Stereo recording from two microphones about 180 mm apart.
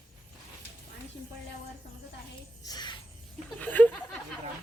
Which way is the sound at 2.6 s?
25° left (ahead or behind).